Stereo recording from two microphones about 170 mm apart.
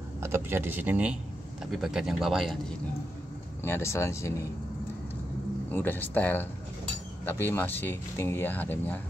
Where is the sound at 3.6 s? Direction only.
15° left (ahead or behind).